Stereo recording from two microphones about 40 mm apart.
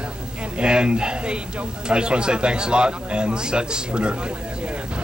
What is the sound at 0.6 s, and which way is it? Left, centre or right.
A man's voice, right.